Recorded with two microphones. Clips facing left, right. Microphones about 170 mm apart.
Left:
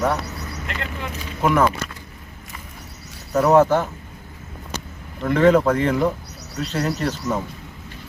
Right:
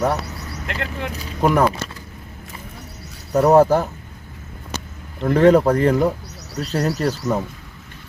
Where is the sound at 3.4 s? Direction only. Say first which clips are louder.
Right 2 dB; 35° right (ahead or behind).